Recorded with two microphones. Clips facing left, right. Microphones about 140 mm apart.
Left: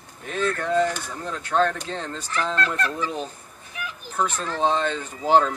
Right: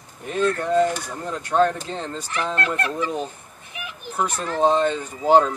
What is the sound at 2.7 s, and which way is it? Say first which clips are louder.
Speech: right 2 dB; 60° right (ahead or behind).